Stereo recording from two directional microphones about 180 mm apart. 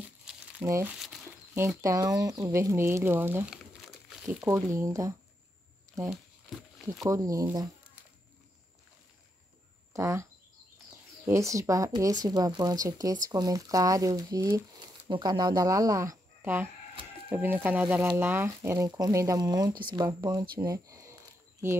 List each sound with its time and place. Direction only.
0.2 s crumpling: 5° right (ahead or behind)
0.7 s speech: 15° right (ahead or behind)
3.8 s crumpling: centre (ahead or behind)
4.4 s speech: 15° right (ahead or behind)
6.0 s crumpling: centre (ahead or behind)
7.1 s speech: 20° right (ahead or behind)
9.9 s speech: 15° right (ahead or behind)
11.2 s speech: 15° right (ahead or behind)